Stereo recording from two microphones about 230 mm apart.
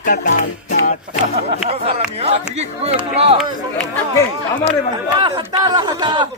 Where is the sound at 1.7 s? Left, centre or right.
Right.